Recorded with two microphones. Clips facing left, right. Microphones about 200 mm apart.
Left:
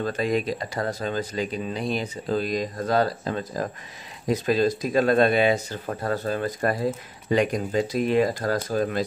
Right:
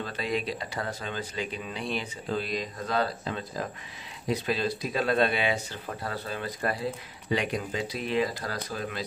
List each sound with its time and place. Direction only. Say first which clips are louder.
0.0 s speech: left 7 dB; 45° left (ahead or behind)